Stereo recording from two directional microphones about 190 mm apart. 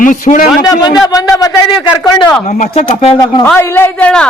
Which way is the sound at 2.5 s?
35° left (ahead or behind).